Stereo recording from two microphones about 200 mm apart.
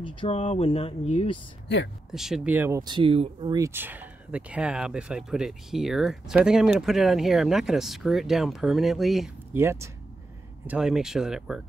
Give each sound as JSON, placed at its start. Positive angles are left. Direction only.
{"t": 0.0, "sound": "speech", "side_deg": 25}
{"t": 2.0, "sound": "speech", "side_deg": 0}
{"t": 3.5, "sound": "speech", "side_deg": -15}
{"t": 9.5, "sound": "speech", "side_deg": -10}